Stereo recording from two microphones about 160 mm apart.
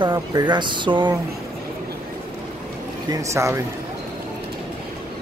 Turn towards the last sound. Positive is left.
turn(degrees=-20)  # may be behind; listen again after turning